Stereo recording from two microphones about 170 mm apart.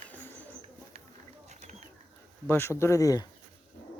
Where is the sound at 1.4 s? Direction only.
40° right (ahead or behind).